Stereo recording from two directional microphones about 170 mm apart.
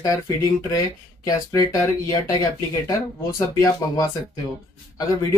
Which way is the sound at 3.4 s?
20° left (ahead or behind).